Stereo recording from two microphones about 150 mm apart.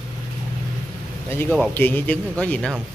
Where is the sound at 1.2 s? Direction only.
15° left (ahead or behind).